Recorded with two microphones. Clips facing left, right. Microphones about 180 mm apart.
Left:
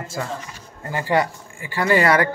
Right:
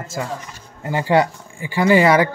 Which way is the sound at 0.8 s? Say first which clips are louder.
Right 4 dB; 20° right (ahead or behind).